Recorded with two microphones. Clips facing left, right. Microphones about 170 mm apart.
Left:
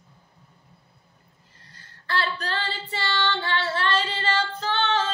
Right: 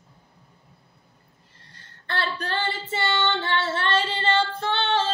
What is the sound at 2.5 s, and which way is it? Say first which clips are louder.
Female singing: right 3 dB; 25° right (ahead or behind).